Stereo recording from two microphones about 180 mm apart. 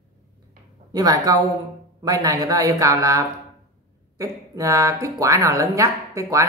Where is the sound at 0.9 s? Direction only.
20° right (ahead or behind).